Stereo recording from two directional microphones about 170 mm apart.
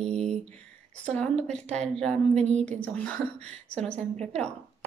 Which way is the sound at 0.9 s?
5° left (ahead or behind).